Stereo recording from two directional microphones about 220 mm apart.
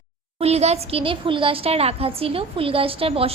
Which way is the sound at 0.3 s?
30° right (ahead or behind).